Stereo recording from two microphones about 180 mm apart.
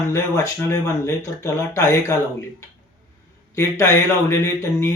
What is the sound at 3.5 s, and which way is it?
Speech, 15° left (ahead or behind).